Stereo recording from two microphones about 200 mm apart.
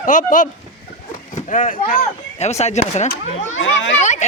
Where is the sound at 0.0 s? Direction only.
40° left (ahead or behind).